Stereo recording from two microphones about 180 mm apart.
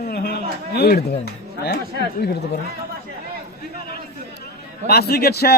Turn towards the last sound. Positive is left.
turn(degrees=60)  # may be behind; listen again after turning